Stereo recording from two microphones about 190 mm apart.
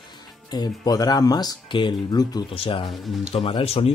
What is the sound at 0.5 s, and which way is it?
Speech, 20° left (ahead or behind).